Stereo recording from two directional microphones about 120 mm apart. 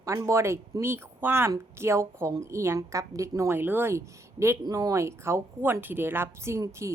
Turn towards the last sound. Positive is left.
turn(degrees=-25)  # may be behind; listen again after turning